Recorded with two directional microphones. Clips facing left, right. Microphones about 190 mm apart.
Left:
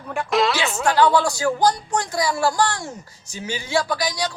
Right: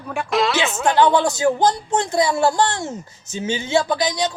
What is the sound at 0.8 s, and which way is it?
Speech, 20° right (ahead or behind).